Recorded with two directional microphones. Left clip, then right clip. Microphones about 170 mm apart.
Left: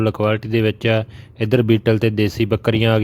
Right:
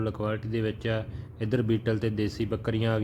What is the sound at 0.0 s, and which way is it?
Speech, 50° left (ahead or behind).